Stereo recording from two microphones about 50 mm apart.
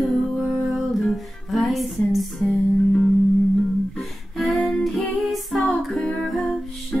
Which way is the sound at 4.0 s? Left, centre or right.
Centre.